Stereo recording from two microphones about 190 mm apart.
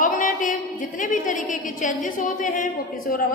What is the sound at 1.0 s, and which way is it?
A woman's voice, 40° left (ahead or behind).